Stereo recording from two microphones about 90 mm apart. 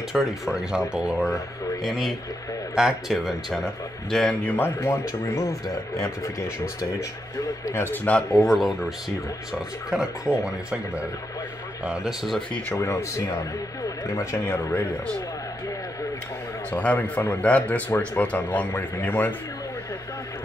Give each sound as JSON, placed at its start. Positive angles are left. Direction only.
{"t": 0.1, "sound": "a man's voice", "side_deg": -5}
{"t": 4.5, "sound": "speech", "side_deg": 25}
{"t": 11.8, "sound": "a man's voice", "side_deg": -10}
{"t": 12.7, "sound": "speech", "side_deg": 35}
{"t": 14.4, "sound": "speech", "side_deg": 25}
{"t": 16.7, "sound": "speech", "side_deg": 15}